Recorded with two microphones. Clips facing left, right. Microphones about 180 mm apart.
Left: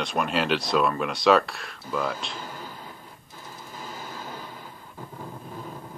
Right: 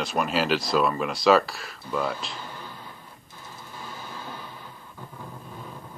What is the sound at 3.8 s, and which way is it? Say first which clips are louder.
Train: left 1 dB; 40° left (ahead or behind).